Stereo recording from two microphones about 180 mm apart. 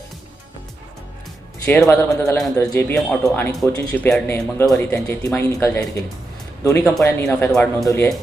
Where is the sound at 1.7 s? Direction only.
10° left (ahead or behind).